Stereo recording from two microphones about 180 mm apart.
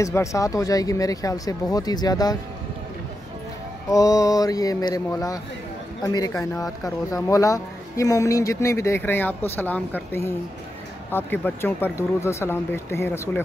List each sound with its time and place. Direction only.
0.0 s speech: 15° left (ahead or behind)
3.9 s speech: 20° left (ahead or behind)